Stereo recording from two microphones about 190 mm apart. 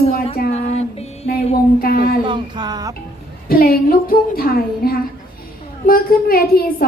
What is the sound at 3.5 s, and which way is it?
A woman's voice, 50° left (ahead or behind).